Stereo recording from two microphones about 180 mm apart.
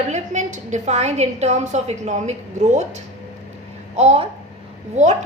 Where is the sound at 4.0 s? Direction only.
35° right (ahead or behind).